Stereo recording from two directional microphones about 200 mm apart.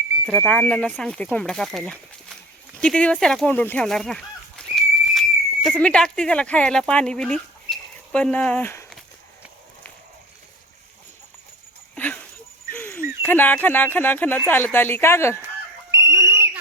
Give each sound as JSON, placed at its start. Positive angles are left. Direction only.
{"t": 0.3, "sound": "speech", "side_deg": 5}
{"t": 2.7, "sound": "a sound", "side_deg": 5}
{"t": 5.6, "sound": "speech", "side_deg": 5}
{"t": 11.9, "sound": "a sound", "side_deg": 10}
{"t": 13.2, "sound": "speech", "side_deg": 10}
{"t": 15.9, "sound": "whistle", "side_deg": -15}